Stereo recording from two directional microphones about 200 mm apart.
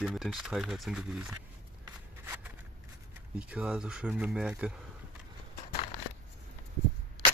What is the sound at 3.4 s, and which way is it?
Speech, 5° right (ahead or behind).